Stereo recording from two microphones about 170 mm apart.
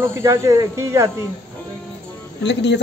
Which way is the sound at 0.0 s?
15° right (ahead or behind).